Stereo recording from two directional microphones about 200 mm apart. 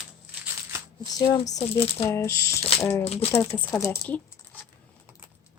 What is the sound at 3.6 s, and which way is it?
Speech, 15° left (ahead or behind).